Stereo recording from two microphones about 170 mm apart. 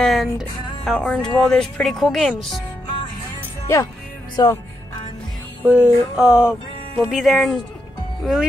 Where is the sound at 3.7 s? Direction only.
15° left (ahead or behind).